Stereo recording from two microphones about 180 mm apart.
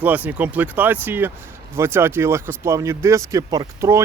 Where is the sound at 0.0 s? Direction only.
10° right (ahead or behind).